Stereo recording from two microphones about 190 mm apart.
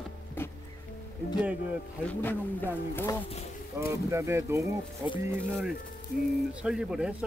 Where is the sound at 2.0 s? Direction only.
10° left (ahead or behind).